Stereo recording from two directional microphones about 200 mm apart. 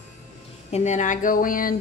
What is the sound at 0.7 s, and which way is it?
Speech, 35° left (ahead or behind).